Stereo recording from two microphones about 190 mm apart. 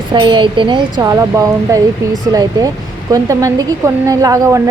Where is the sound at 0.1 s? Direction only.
25° right (ahead or behind).